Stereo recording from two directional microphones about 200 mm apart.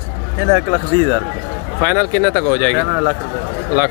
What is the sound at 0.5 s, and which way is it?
Speech, 10° right (ahead or behind).